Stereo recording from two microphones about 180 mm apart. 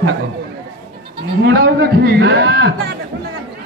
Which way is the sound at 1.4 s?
65° right (ahead or behind).